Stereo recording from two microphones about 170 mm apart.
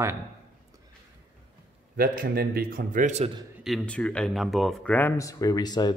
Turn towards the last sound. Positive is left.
turn(degrees=25)  # may be behind; listen again after turning